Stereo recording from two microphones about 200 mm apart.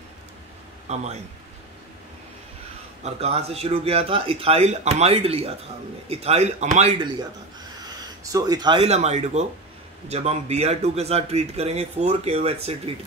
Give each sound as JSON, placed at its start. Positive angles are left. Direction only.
{"t": 0.8, "sound": "speech", "side_deg": -35}
{"t": 3.0, "sound": "speech", "side_deg": -30}
{"t": 7.8, "sound": "speech", "side_deg": -20}